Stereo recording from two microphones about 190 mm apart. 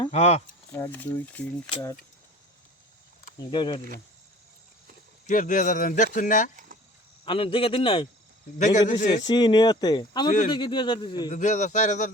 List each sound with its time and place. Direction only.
0.1 s speech: 35° left (ahead or behind)
0.7 s speech: 15° left (ahead or behind)
1.7 s speech: 20° left (ahead or behind)
3.5 s speech: 25° left (ahead or behind)
5.2 s a man's voice: 45° left (ahead or behind)
7.3 s speech: 30° left (ahead or behind)
8.5 s speech: 40° left (ahead or behind)
9.2 s speech: 25° left (ahead or behind)
11.3 s speech: 40° left (ahead or behind)